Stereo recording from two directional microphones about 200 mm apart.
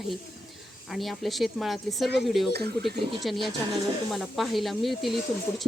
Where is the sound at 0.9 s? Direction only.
Centre (ahead or behind).